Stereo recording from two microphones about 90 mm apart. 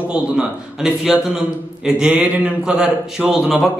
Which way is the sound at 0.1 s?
10° right (ahead or behind).